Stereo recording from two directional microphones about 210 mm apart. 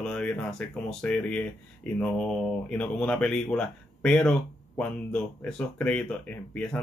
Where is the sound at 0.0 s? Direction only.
5° left (ahead or behind).